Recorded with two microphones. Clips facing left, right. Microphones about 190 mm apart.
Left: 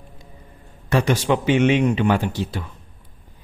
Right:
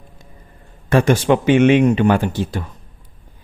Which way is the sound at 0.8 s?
50° right (ahead or behind).